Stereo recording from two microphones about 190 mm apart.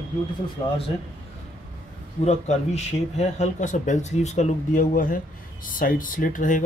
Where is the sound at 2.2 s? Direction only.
35° left (ahead or behind).